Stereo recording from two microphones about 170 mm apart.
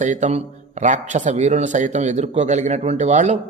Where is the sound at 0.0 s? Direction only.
45° right (ahead or behind).